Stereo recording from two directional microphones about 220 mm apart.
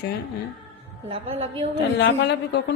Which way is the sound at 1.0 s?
25° right (ahead or behind).